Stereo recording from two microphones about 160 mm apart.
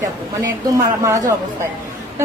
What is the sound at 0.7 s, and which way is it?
Speech, 20° right (ahead or behind).